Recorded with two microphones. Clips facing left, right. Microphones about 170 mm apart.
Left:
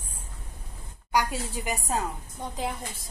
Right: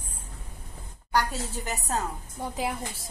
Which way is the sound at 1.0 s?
10° left (ahead or behind).